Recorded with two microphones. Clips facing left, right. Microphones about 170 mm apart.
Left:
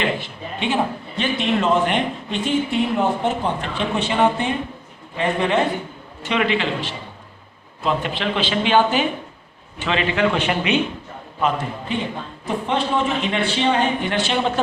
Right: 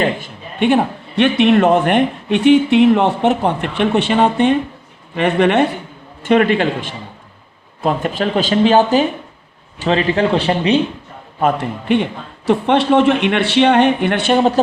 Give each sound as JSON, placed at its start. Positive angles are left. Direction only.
{"t": 0.0, "sound": "a man's voice", "side_deg": -50}
{"t": 6.2, "sound": "a man's voice", "side_deg": -50}
{"t": 11.5, "sound": "a man's voice", "side_deg": -65}